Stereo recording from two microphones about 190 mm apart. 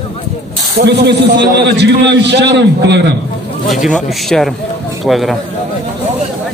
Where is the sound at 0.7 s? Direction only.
60° right (ahead or behind).